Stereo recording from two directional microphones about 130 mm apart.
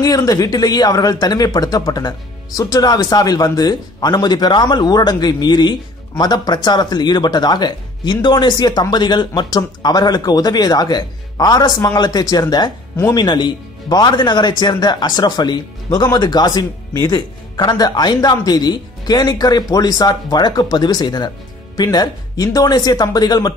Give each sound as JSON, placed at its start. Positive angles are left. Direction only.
{"t": 0.0, "sound": "speech", "side_deg": 30}